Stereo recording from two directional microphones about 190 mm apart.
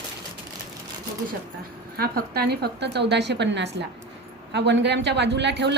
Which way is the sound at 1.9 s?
55° right (ahead or behind).